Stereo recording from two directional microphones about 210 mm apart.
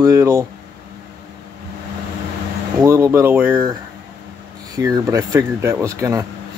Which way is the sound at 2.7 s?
15° right (ahead or behind).